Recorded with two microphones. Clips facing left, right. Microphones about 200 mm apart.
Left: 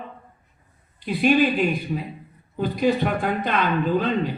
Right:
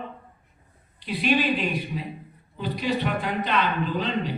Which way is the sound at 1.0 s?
50° left (ahead or behind).